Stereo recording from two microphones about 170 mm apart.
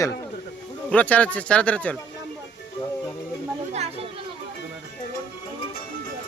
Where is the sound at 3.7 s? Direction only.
40° right (ahead or behind).